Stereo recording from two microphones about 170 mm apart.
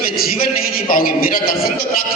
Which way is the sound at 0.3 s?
55° left (ahead or behind).